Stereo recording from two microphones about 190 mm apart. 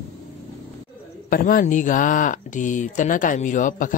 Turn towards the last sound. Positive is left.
turn(degrees=45)  # may be behind; listen again after turning